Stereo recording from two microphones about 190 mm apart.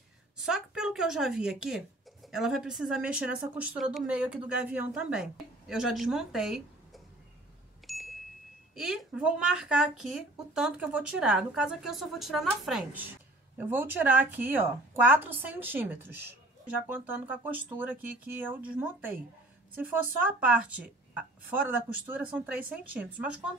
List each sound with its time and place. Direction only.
0.4 s speech: 5° right (ahead or behind)
7.8 s bicycle bell: centre (ahead or behind)
8.7 s a woman's voice: 5° right (ahead or behind)
20.3 s a woman's voice: 5° right (ahead or behind)